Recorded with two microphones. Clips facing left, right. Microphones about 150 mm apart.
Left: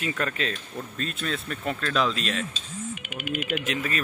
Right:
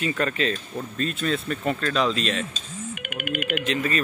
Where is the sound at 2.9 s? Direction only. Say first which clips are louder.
Right 3 dB; 60° right (ahead or behind).